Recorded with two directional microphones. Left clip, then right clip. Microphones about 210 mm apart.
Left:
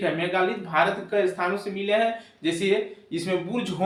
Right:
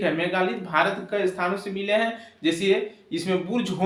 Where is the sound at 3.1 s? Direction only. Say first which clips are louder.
Right 2 dB; 30° right (ahead or behind).